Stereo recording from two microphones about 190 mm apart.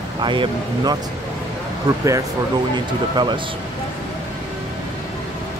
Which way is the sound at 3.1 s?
25° right (ahead or behind).